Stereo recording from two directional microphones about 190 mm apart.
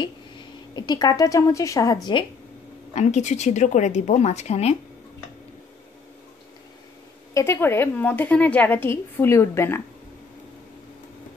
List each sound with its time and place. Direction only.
0.7 s a woman's voice: 20° left (ahead or behind)
2.9 s speech: 35° left (ahead or behind)
7.3 s a woman's voice: 15° left (ahead or behind)